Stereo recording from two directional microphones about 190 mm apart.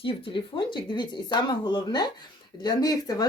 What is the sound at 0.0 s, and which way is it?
Speech, 25° left (ahead or behind).